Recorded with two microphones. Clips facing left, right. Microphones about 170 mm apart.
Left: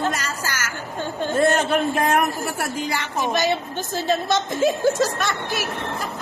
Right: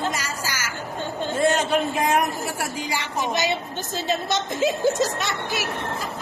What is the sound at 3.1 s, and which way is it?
A woman's voice, 15° right (ahead or behind).